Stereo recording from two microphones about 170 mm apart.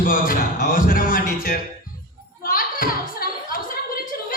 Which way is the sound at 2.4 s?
55° left (ahead or behind).